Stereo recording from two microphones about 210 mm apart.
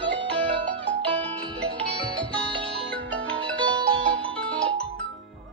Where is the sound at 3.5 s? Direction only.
25° right (ahead or behind).